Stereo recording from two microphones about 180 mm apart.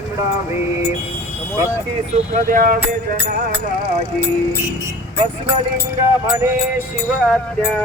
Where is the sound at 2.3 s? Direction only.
50° right (ahead or behind).